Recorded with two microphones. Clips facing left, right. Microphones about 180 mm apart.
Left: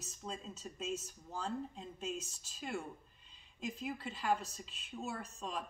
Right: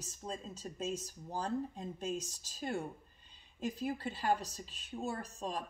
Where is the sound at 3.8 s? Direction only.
35° right (ahead or behind).